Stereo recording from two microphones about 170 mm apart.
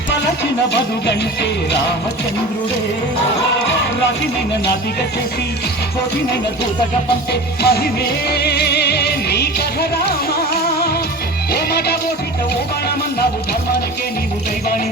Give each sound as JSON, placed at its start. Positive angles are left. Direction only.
{"t": 0.7, "sound": "music", "side_deg": 85}
{"t": 7.6, "sound": "music", "side_deg": 65}